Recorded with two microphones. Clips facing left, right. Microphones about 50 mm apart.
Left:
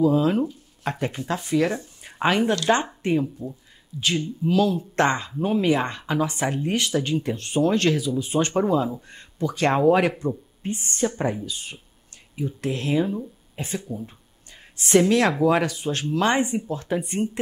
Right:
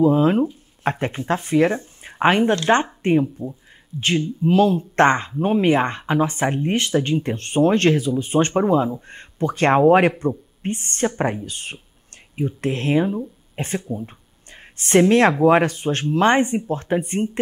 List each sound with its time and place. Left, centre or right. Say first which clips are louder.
0.0 s speech: right 4 dB; right
8.5 s speech: right 2 dB; right
9.0 s speech: right 4 dB; right
13.8 s speech: right 4 dB; right
14.5 s a woman's voice: right 2 dB; right